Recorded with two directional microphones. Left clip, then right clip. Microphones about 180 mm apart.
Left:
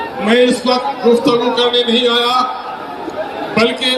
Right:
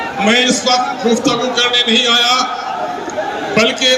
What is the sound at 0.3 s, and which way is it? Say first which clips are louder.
Speech: left 1 dB; 30° right (ahead or behind).